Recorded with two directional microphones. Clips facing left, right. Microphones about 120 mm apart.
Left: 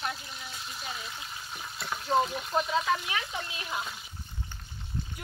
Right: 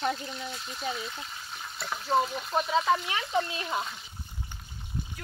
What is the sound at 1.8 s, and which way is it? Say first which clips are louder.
Speech: even; centre (ahead or behind).